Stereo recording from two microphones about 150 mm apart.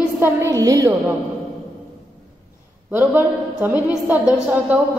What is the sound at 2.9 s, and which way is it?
A woman's voice, 15° right (ahead or behind).